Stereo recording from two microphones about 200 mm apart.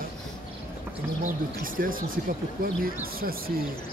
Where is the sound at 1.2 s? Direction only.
45° right (ahead or behind).